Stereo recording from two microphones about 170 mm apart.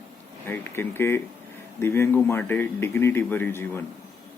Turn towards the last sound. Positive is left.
turn(degrees=15)  # may be behind; listen again after turning